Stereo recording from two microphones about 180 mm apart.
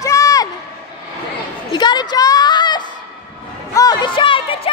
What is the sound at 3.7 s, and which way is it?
Music, 20° left (ahead or behind).